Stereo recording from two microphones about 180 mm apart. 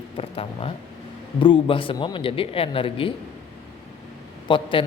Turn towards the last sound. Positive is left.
turn(degrees=25)  # may be behind; listen again after turning